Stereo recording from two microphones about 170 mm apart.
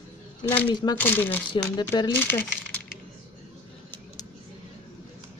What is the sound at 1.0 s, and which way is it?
Speech, 10° left (ahead or behind).